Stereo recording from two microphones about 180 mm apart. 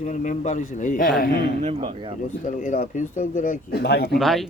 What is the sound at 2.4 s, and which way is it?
Speech, 45° left (ahead or behind).